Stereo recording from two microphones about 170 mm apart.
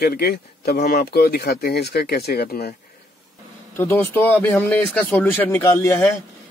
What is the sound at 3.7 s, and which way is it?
Speech, 15° left (ahead or behind).